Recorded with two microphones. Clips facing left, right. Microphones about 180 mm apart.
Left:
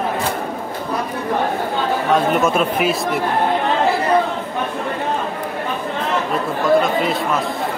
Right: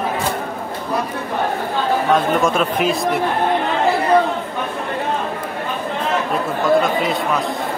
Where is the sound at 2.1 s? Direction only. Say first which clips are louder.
Left 3 dB; 5° left (ahead or behind).